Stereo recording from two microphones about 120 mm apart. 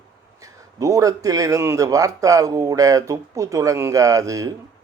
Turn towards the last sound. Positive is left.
turn(degrees=-30)  # may be behind; listen again after turning